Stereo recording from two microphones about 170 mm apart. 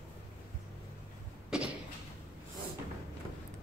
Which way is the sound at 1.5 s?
5° right (ahead or behind).